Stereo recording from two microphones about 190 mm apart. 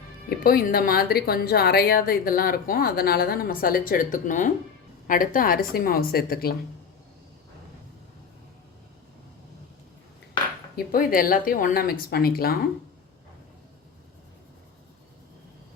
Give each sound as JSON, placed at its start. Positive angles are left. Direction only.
{"t": 0.3, "sound": "speech", "side_deg": 50}
{"t": 10.8, "sound": "speech", "side_deg": 50}